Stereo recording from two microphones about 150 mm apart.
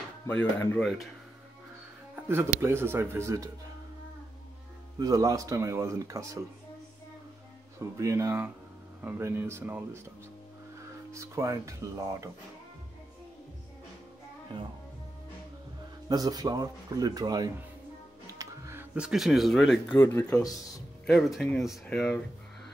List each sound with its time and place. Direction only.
0.3 s speech: 15° left (ahead or behind)
2.2 s speech: 15° right (ahead or behind)
4.9 s speech: 25° right (ahead or behind)
7.8 s speech: 20° right (ahead or behind)
11.1 s speech: 20° right (ahead or behind)
16.1 s speech: 25° right (ahead or behind)
18.2 s music: 20° right (ahead or behind)
18.9 s speech: 5° right (ahead or behind)
20.0 s speech: 15° left (ahead or behind)
21.0 s speech: centre (ahead or behind)